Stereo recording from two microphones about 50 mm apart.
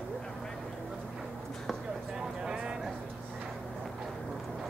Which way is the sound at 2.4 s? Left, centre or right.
Centre.